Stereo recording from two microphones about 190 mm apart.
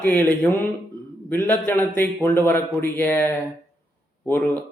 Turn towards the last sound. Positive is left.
turn(degrees=10)  # may be behind; listen again after turning